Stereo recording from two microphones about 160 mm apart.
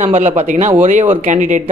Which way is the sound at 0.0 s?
45° right (ahead or behind).